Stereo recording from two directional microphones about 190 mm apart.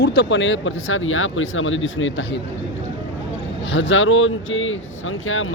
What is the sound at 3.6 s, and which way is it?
Speech, 80° left.